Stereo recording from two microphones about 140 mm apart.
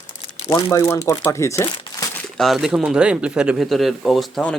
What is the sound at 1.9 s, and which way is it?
Crumpling, 30° left (ahead or behind).